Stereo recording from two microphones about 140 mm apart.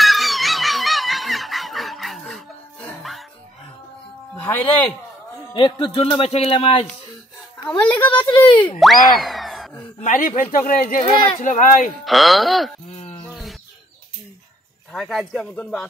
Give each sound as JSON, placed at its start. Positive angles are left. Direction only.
{"t": 0.0, "sound": "a sound", "side_deg": 0}
{"t": 3.0, "sound": "music", "side_deg": 0}
{"t": 4.4, "sound": "speech", "side_deg": 15}
{"t": 5.5, "sound": "speech", "side_deg": 35}
{"t": 8.1, "sound": "speech", "side_deg": 35}
{"t": 8.7, "sound": "boing", "side_deg": 0}
{"t": 10.0, "sound": "a man's voice", "side_deg": 70}
{"t": 11.3, "sound": "speech", "side_deg": 65}
{"t": 12.0, "sound": "speech", "side_deg": 0}
{"t": 13.2, "sound": "bird", "side_deg": 0}
{"t": 14.9, "sound": "speech", "side_deg": 5}